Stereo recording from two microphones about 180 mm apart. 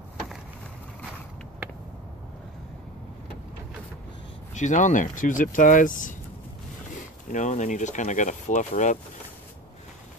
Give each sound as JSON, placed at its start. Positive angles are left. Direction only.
{"t": 4.6, "sound": "speech", "side_deg": 45}
{"t": 7.3, "sound": "speech", "side_deg": 40}